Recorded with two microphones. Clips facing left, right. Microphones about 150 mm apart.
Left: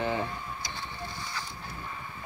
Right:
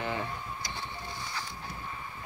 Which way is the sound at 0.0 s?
25° left (ahead or behind).